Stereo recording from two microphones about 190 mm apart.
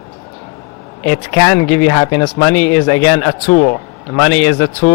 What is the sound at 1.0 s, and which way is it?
Speech, 10° left (ahead or behind).